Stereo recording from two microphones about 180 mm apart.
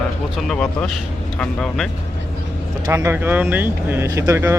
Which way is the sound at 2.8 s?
15° right (ahead or behind).